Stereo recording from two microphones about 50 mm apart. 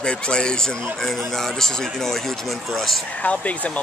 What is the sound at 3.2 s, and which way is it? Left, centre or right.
Speech, left.